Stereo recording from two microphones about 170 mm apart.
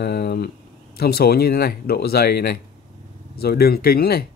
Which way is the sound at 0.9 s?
65° left (ahead or behind).